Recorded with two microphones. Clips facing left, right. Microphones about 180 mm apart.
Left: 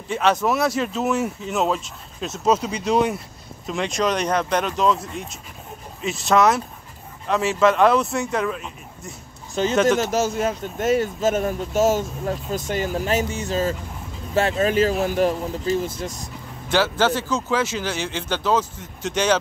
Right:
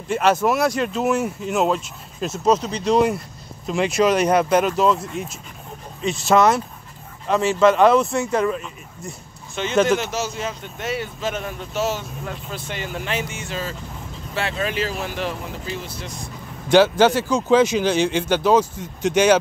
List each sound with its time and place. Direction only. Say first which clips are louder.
0.1 s speech: right 2 dB; centre (ahead or behind)
9.6 s speech: left 1 dB; 35° left (ahead or behind)
16.6 s speech: right 6 dB; 15° right (ahead or behind)